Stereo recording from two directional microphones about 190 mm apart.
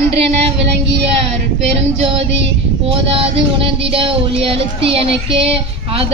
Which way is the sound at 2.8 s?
30° right (ahead or behind).